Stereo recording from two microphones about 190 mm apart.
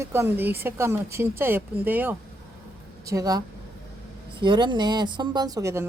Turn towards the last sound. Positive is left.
turn(degrees=-15)  # may be behind; listen again after turning